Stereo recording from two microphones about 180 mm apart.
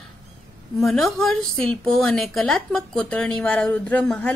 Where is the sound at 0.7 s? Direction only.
Centre (ahead or behind).